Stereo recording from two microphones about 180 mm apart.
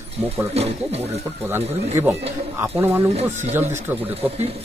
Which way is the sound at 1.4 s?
15° right (ahead or behind).